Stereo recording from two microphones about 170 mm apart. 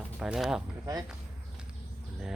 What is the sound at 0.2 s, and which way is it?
Speech, centre (ahead or behind).